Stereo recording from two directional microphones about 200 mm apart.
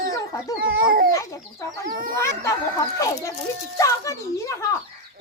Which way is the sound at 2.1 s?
15° left (ahead or behind).